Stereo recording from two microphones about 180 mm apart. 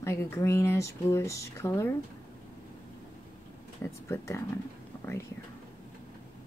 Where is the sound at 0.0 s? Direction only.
15° left (ahead or behind).